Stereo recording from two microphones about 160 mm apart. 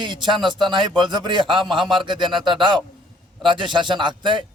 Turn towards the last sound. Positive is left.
turn(degrees=-30)  # may be behind; listen again after turning